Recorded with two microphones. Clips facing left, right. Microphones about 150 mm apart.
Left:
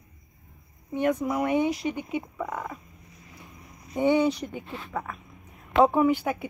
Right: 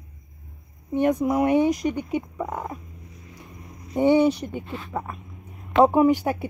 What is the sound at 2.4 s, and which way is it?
Fowl, 30° right (ahead or behind).